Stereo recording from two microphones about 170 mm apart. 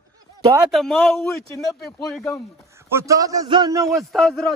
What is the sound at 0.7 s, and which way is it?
A man's voice, centre (ahead or behind).